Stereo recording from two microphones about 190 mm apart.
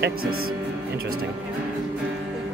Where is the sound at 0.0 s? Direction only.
90° right.